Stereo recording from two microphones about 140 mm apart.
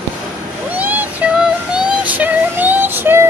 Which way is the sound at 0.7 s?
10° right (ahead or behind).